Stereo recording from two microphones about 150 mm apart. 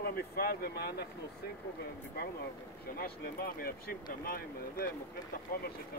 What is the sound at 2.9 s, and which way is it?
Speech, 85° left.